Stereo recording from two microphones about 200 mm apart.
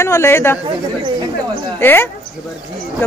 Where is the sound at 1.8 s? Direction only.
10° left (ahead or behind).